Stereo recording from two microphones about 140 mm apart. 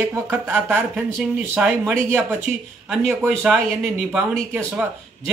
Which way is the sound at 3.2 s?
5° right (ahead or behind).